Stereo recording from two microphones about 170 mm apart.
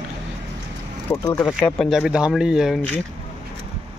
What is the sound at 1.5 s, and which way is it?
Speech, 5° right (ahead or behind).